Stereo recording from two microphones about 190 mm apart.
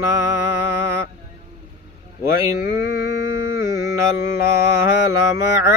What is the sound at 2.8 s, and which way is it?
Mantra, 70° left (ahead or behind).